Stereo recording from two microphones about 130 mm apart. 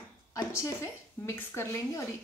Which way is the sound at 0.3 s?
25° left (ahead or behind).